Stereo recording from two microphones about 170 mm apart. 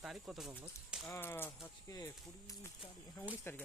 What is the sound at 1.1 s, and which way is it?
Speech, 15° left (ahead or behind).